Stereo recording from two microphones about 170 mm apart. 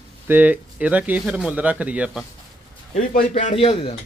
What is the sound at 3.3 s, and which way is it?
Speech, 40° left (ahead or behind).